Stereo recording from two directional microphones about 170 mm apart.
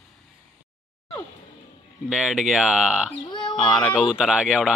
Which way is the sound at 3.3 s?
25° left (ahead or behind).